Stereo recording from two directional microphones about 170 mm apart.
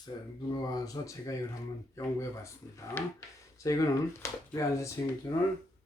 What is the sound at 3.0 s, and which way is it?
Speech, 10° left (ahead or behind).